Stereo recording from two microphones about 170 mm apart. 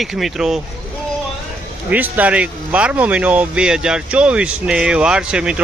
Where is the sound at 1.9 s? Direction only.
10° right (ahead or behind).